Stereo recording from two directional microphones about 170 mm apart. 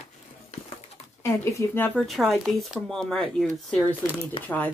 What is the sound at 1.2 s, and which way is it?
Speech, 15° left (ahead or behind).